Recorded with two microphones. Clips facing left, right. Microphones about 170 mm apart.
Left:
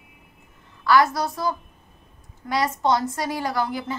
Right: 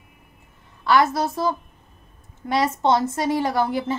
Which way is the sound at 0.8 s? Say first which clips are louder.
Even; 25° right (ahead or behind).